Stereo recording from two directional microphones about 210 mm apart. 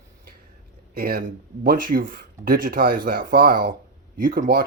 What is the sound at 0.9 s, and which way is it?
Speech, 45° right (ahead or behind).